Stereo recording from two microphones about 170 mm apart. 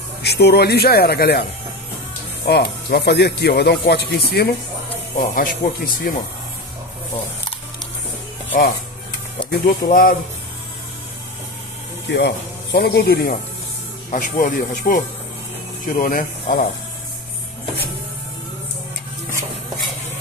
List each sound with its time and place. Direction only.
0.2 s speech: 75° left (ahead or behind)
2.4 s speech: 75° left (ahead or behind)
5.1 s speech: 55° left (ahead or behind)
9.5 s speech: 60° left (ahead or behind)
12.1 s speech: 90° left; by 13.3 s 65° left (ahead or behind)
14.1 s speech: 55° left (ahead or behind)